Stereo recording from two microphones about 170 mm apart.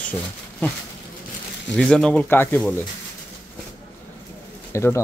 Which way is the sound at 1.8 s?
5° left (ahead or behind).